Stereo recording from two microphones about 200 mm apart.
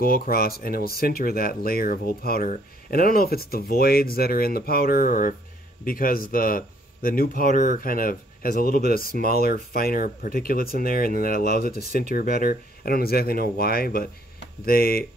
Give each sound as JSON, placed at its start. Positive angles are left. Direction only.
{"t": 0.0, "sound": "speech", "side_deg": 45}
{"t": 11.6, "sound": "speech", "side_deg": -35}
{"t": 12.1, "sound": "speech", "side_deg": 50}